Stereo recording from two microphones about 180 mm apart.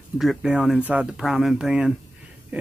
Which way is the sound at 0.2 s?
Centre (ahead or behind).